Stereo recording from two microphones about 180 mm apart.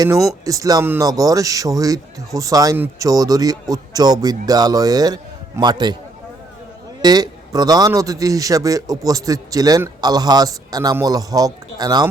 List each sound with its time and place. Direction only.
0.3 s speech: 20° right (ahead or behind)
7.0 s speech: 20° right (ahead or behind)